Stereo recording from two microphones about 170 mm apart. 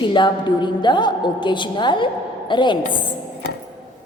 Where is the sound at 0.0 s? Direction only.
30° left (ahead or behind).